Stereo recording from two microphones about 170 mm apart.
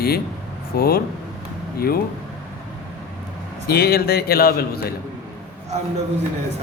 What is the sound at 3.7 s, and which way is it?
A man's voice, 65° left (ahead or behind).